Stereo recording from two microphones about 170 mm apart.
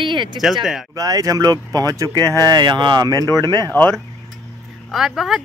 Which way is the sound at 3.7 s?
10° left (ahead or behind).